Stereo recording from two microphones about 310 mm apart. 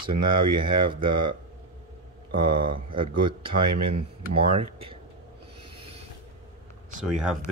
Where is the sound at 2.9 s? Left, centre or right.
Centre.